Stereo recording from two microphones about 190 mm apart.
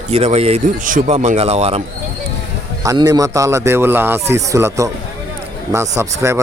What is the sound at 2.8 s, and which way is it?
A man's voice, 20° right (ahead or behind).